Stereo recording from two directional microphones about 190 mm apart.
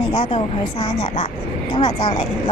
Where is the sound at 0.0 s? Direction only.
30° left (ahead or behind).